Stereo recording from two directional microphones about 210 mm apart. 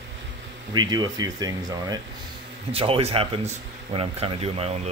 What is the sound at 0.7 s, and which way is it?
Speech, 20° right (ahead or behind).